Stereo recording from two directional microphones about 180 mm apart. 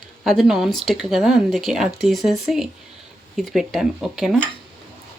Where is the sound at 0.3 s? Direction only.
Centre (ahead or behind).